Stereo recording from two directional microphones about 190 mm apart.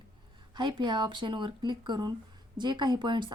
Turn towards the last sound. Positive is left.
turn(degrees=-25)  # may be behind; listen again after turning